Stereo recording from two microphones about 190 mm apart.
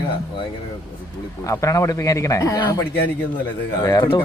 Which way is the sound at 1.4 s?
15° left (ahead or behind).